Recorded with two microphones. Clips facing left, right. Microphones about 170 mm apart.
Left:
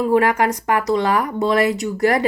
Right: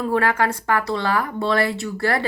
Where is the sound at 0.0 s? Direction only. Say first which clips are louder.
Left 4 dB; 15° left (ahead or behind).